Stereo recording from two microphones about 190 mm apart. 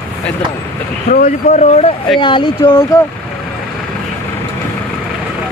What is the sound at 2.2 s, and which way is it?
Speech, 25° left (ahead or behind).